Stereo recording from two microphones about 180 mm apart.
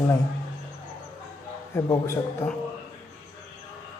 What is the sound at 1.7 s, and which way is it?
Speech, 15° left (ahead or behind).